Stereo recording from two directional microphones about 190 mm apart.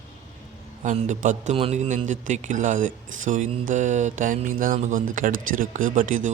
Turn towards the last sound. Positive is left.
turn(degrees=-45)  # may be behind; listen again after turning